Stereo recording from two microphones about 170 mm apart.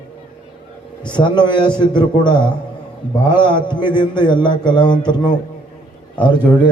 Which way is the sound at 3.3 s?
25° left (ahead or behind).